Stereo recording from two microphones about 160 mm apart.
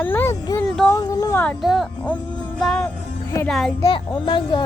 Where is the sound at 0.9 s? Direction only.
20° left (ahead or behind).